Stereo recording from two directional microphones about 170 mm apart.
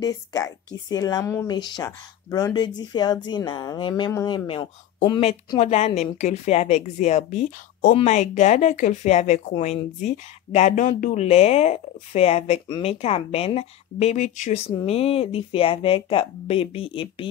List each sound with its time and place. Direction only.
0.0 s speech: 20° left (ahead or behind)
5.6 s speech: 40° left (ahead or behind)
14.7 s speech: 30° left (ahead or behind)